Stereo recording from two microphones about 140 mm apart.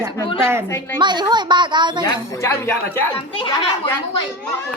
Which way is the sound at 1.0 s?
30° right (ahead or behind).